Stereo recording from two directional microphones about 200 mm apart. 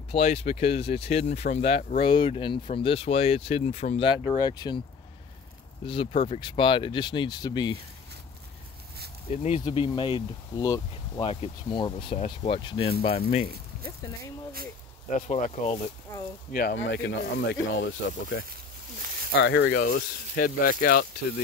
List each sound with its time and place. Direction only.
0.1 s speech: 30° left (ahead or behind)
5.9 s speech: 25° left (ahead or behind)
9.3 s speech: 35° left (ahead or behind)
14.0 s speech: 15° left (ahead or behind)
15.0 s speech: 35° left (ahead or behind)
16.5 s speech: 55° left (ahead or behind)
19.3 s speech: 60° left (ahead or behind); by 21.0 s 45° left (ahead or behind)